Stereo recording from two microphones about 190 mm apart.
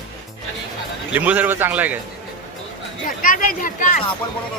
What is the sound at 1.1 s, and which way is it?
Speech, 10° right (ahead or behind).